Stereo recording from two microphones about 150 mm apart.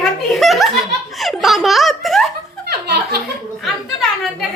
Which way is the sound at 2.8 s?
90° right.